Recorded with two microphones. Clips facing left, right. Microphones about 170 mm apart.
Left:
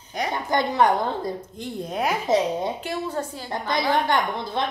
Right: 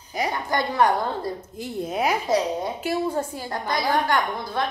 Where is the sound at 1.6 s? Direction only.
5° right (ahead or behind).